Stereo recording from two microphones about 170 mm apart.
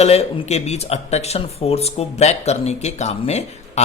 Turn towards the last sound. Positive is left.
turn(degrees=40)  # may be behind; listen again after turning